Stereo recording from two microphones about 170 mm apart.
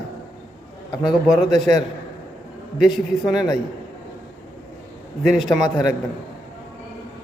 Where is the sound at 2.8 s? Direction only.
5° right (ahead or behind).